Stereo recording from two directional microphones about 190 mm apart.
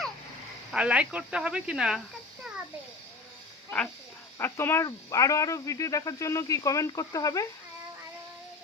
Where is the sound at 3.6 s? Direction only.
5° left (ahead or behind).